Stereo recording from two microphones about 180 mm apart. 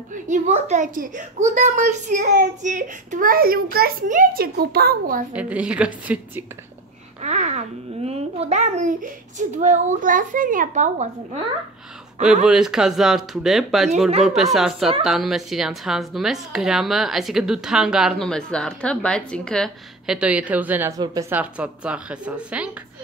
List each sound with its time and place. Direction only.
0.1 s speech: 40° right (ahead or behind)
5.3 s speech: 5° right (ahead or behind)
7.2 s speech: 40° right (ahead or behind)
12.4 s speech: 5° right (ahead or behind)